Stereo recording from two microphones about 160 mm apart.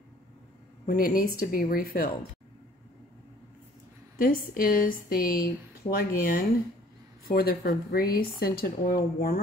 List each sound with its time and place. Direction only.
0.8 s a woman's voice: 65° left (ahead or behind)
4.2 s a woman's voice: 60° left (ahead or behind)